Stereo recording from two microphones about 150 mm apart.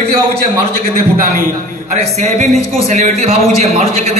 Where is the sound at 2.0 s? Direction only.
50° right (ahead or behind).